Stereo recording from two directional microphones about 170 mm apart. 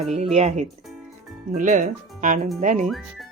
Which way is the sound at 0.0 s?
40° right (ahead or behind).